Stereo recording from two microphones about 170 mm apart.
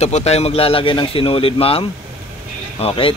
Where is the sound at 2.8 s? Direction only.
30° left (ahead or behind).